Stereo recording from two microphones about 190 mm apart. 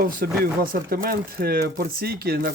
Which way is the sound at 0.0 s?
50° right (ahead or behind).